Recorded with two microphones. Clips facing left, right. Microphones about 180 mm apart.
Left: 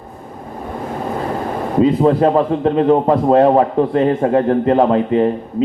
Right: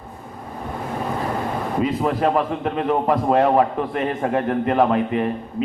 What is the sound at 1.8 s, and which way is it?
A man's voice, 30° left (ahead or behind).